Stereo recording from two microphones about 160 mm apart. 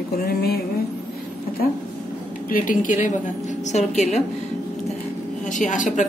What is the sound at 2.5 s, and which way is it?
A woman's voice, 55° left (ahead or behind).